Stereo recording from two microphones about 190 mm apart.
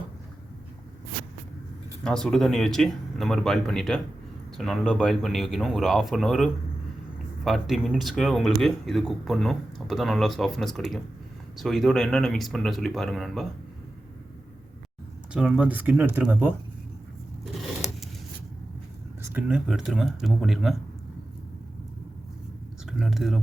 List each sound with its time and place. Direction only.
2.0 s speech: 5° left (ahead or behind)
15.3 s speech: 5° right (ahead or behind)
19.3 s speech: 5° right (ahead or behind)
22.9 s speech: centre (ahead or behind)